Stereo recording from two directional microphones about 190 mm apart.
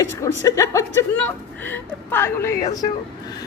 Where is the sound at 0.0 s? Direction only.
15° left (ahead or behind).